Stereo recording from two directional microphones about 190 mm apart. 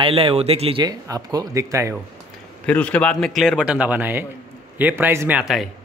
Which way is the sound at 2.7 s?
5° left (ahead or behind).